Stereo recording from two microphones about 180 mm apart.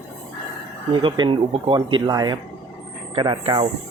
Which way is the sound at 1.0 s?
25° right (ahead or behind).